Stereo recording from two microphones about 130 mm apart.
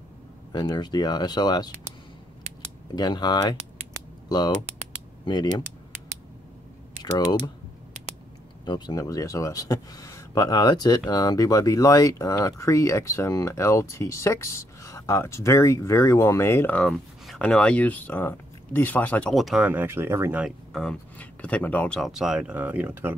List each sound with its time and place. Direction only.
0.5 s speech: 35° left (ahead or behind)
3.0 s speech: 35° left (ahead or behind)
5.2 s speech: 35° left (ahead or behind)
7.0 s speech: 35° left (ahead or behind)
8.6 s speech: 35° left (ahead or behind); by 16.8 s 15° left (ahead or behind)
16.8 s speech: 5° left (ahead or behind)
19.3 s speech: centre (ahead or behind)
19.6 s speech: 15° right (ahead or behind)
20.7 s speech: 5° left (ahead or behind); by 23.1 s 15° right (ahead or behind)